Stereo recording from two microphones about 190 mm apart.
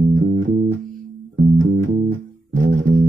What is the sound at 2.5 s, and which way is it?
Music, 40° right (ahead or behind).